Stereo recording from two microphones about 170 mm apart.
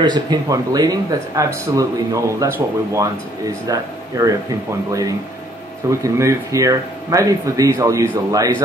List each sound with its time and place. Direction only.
0.0 s speech: 25° right (ahead or behind)
5.9 s speech: 20° right (ahead or behind)